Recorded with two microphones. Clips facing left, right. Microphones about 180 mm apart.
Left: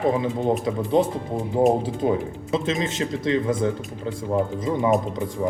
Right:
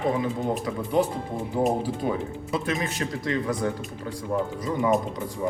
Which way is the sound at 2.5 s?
25° left (ahead or behind).